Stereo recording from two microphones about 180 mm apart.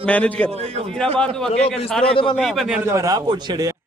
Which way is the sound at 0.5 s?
35° right (ahead or behind).